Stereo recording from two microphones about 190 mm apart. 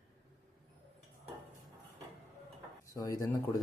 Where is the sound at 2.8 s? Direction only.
15° left (ahead or behind).